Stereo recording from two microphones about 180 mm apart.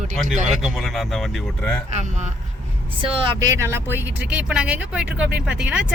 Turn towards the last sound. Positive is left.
turn(degrees=-5)  # may be behind; listen again after turning